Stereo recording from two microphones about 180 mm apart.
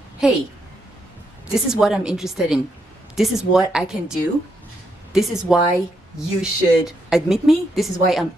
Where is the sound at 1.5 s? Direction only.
5° right (ahead or behind).